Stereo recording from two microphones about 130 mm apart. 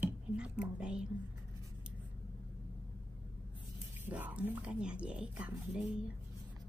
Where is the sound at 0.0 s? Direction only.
10° right (ahead or behind).